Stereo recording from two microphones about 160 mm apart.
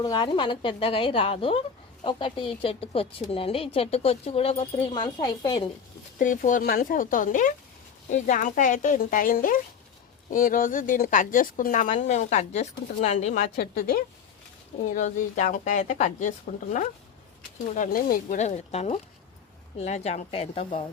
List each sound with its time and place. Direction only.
0.0 s speech: 30° left (ahead or behind)
6.1 s speech: 55° left (ahead or behind)
13.6 s speech: 65° left (ahead or behind)
14.9 s speech: 50° left (ahead or behind)
17.7 s speech: 55° left (ahead or behind); by 20.7 s 35° left (ahead or behind)